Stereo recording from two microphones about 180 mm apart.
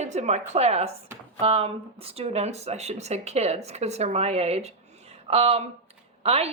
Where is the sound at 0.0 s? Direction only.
40° right (ahead or behind).